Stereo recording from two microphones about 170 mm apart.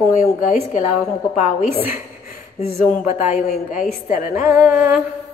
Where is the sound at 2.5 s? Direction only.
40° left (ahead or behind).